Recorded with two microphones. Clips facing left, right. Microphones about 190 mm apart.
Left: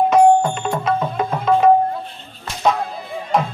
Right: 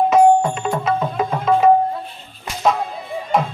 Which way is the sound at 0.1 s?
Centre (ahead or behind).